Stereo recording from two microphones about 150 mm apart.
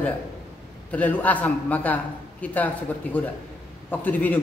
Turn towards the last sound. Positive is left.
turn(degrees=10)  # may be behind; listen again after turning